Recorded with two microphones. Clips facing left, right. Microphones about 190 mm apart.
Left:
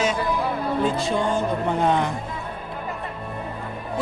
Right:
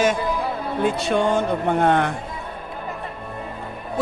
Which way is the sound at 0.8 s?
65° right (ahead or behind).